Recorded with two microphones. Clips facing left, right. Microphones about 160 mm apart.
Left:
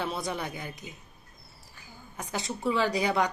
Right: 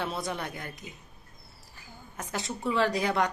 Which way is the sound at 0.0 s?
Centre (ahead or behind).